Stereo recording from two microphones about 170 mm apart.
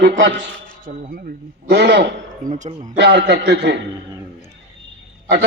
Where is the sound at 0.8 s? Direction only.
55° right (ahead or behind); by 2.1 s 85° right.